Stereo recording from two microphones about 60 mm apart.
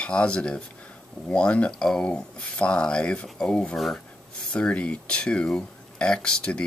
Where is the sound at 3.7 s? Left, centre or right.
Centre.